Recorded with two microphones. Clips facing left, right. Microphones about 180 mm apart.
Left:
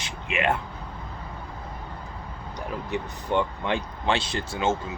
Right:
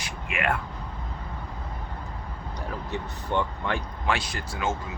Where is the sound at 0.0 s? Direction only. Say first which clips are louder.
Left 3 dB; 20° left (ahead or behind).